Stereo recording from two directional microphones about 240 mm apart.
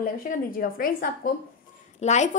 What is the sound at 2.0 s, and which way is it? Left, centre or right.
Speech, left.